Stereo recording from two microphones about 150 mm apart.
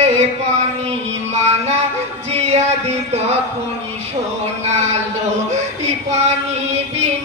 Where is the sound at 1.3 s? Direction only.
45° right (ahead or behind).